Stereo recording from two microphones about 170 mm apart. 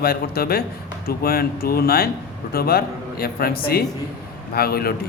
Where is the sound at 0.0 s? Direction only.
65° left (ahead or behind).